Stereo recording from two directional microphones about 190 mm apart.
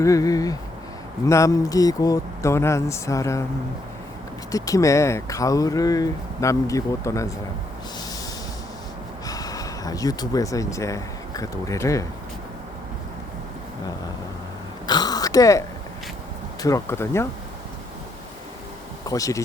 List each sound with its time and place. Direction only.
0.0 s speech: 15° left (ahead or behind)
4.5 s speech: 15° left (ahead or behind)
9.2 s speech: 20° left (ahead or behind)
14.8 s a sound: 20° left (ahead or behind)
16.6 s speech: 15° left (ahead or behind)
19.0 s speech: 15° left (ahead or behind)